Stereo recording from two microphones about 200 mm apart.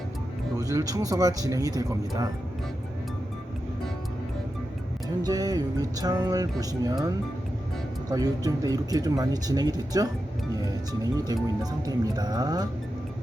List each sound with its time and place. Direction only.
0.5 s speech: 15° right (ahead or behind)
5.2 s speech: 20° right (ahead or behind)
8.1 s speech: 20° right (ahead or behind)